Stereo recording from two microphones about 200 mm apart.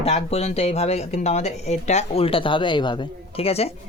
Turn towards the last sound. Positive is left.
turn(degrees=30)  # may be behind; listen again after turning